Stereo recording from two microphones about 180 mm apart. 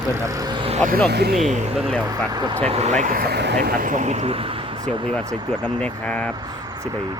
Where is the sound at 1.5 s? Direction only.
40° right (ahead or behind).